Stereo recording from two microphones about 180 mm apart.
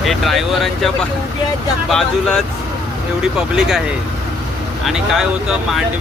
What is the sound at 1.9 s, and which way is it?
Speech, 5° left (ahead or behind).